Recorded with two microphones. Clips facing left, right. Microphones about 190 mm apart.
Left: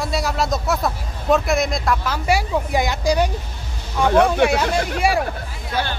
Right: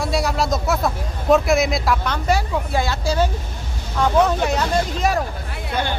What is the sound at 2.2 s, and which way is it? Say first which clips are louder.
Speech: left 2 dB; 15° left (ahead or behind).